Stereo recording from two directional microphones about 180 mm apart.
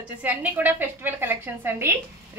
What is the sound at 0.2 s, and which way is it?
A woman's voice, 10° right (ahead or behind).